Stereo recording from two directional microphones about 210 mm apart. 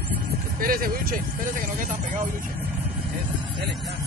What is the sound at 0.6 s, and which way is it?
Vehicle, 45° right (ahead or behind).